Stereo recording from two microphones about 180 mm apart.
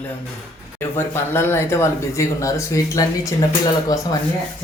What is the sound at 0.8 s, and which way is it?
Speech, 15° left (ahead or behind).